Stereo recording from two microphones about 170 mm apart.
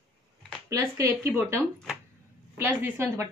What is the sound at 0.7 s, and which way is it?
Speech, 15° right (ahead or behind).